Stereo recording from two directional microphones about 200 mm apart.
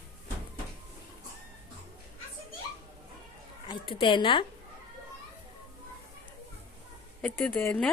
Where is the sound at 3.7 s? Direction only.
25° left (ahead or behind).